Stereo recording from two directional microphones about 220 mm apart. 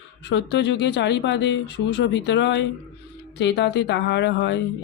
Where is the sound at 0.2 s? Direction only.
50° left (ahead or behind).